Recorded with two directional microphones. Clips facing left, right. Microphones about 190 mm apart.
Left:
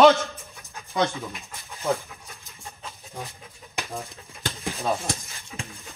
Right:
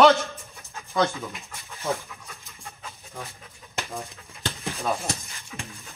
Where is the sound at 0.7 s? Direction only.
15° left (ahead or behind).